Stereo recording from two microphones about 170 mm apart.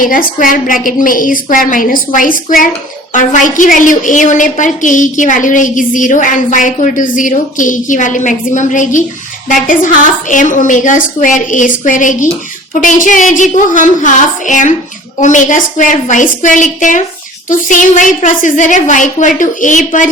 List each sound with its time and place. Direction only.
0.0 s a woman's voice: 55° left (ahead or behind)